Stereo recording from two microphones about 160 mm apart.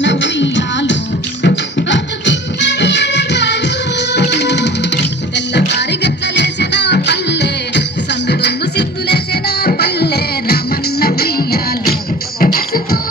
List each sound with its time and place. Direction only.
1.4 s music: 90° left; by 13.0 s 65° left (ahead or behind)